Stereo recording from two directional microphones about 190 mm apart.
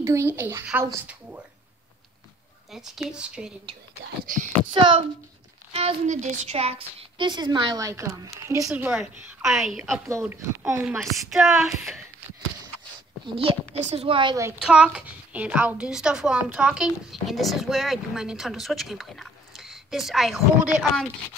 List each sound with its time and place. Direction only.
0.0 s speech: 15° right (ahead or behind)
2.7 s a child's voice: centre (ahead or behind)
4.3 s speech: 45° right (ahead or behind)
4.7 s a woman's voice: 25° right (ahead or behind)
8.6 s a child's voice: 5° right (ahead or behind)
13.4 s a woman's voice: 35° right (ahead or behind)
14.7 s a child's voice: 5° right (ahead or behind)